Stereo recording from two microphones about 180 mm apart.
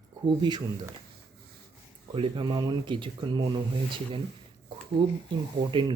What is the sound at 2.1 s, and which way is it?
Speech, 30° right (ahead or behind).